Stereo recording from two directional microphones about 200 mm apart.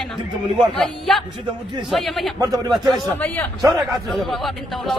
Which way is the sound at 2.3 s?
15° right (ahead or behind).